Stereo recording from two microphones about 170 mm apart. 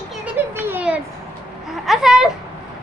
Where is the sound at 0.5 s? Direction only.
10° right (ahead or behind).